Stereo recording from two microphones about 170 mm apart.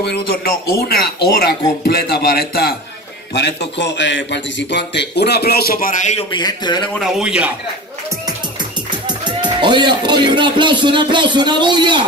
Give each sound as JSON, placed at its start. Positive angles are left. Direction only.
{"t": 0.0, "sound": "speech", "side_deg": 65}
{"t": 3.3, "sound": "a man's voice", "side_deg": 90}
{"t": 6.3, "sound": "speech", "side_deg": 25}
{"t": 7.0, "sound": "a man's voice", "side_deg": -5}
{"t": 9.0, "sound": "a man's voice", "side_deg": -25}